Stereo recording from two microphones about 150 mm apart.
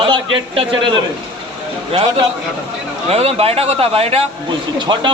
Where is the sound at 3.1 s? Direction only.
40° right (ahead or behind).